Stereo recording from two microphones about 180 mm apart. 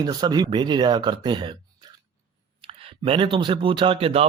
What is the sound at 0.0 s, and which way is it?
Speech, 20° right (ahead or behind).